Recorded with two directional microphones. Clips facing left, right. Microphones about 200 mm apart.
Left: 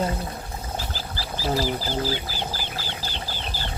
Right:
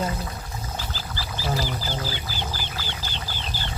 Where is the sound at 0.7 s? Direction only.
35° left (ahead or behind).